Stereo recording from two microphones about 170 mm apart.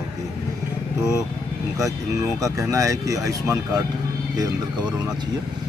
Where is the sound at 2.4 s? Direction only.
20° right (ahead or behind).